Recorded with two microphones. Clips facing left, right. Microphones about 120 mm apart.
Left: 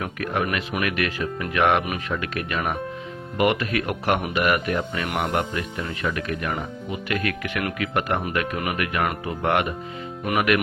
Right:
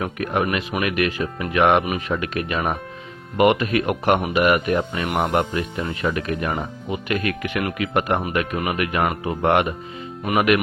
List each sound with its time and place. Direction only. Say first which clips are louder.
0.0 s speech: right 3 dB; 20° right (ahead or behind)